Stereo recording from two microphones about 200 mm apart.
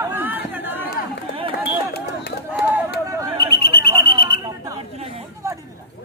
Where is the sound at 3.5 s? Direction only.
50° left (ahead or behind).